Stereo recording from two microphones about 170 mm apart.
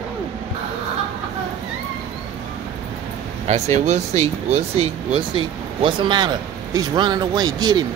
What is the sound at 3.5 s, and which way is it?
Speech, 40° right (ahead or behind).